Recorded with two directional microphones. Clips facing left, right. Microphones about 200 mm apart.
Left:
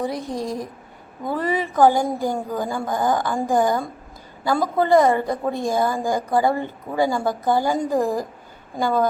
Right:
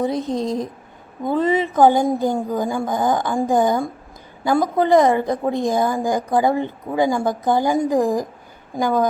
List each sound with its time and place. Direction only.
0.0 s a woman's voice: 20° right (ahead or behind)